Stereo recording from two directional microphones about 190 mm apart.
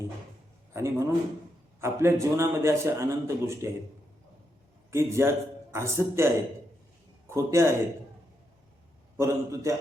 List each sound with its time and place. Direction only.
0.7 s a man's voice: 15° right (ahead or behind)
4.9 s a man's voice: 15° right (ahead or behind)
9.1 s a man's voice: 15° right (ahead or behind)